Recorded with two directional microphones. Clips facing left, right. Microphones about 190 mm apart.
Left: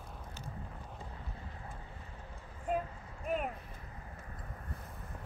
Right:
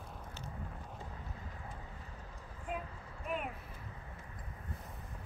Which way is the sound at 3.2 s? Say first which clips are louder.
Left 4 dB; 40° left (ahead or behind).